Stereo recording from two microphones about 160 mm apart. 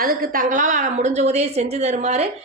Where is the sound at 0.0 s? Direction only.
65° right (ahead or behind).